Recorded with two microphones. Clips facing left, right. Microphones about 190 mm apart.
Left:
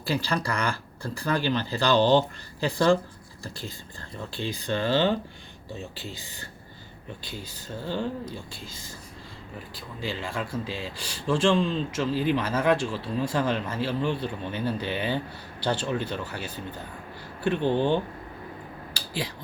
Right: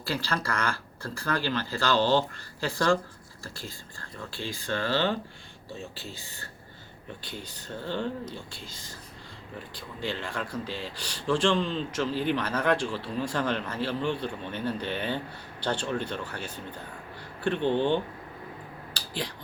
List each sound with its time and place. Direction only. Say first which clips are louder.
0.0 s speech: left 3 dB; 15° left (ahead or behind)
9.7 s speech: even; 5° left (ahead or behind)
18.9 s a sound: left 2 dB; 10° left (ahead or behind)